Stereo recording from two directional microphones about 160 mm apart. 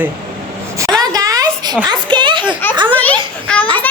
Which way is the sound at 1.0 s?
20° right (ahead or behind).